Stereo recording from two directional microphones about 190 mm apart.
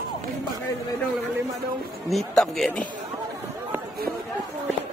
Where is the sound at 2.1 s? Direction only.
Centre (ahead or behind).